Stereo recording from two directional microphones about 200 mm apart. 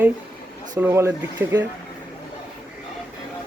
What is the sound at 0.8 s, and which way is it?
Speech, 10° right (ahead or behind).